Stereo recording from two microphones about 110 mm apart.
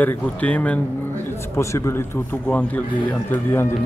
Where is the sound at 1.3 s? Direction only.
25° left (ahead or behind).